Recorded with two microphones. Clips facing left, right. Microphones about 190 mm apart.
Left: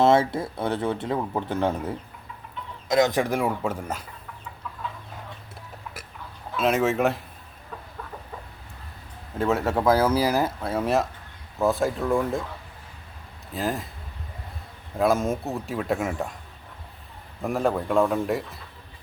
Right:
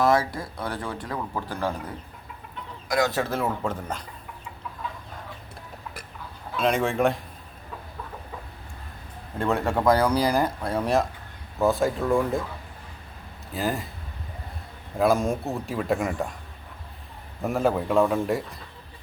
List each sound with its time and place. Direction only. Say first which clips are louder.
0.0 s speech: left 3 dB; 25° left (ahead or behind)
2.9 s speech: left 3 dB; 20° left (ahead or behind)
6.6 s speech: left 1 dB; 5° left (ahead or behind)
9.4 s speech: left 1 dB; 5° left (ahead or behind)
13.5 s speech: even; centre (ahead or behind)
14.9 s speech: even; centre (ahead or behind)
17.4 s speech: right 1 dB; centre (ahead or behind)